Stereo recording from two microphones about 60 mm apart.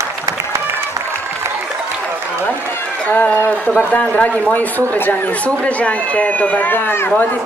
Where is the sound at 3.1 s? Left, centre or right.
Left.